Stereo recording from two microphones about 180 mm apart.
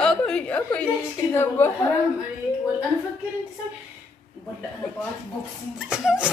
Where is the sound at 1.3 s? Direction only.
10° left (ahead or behind).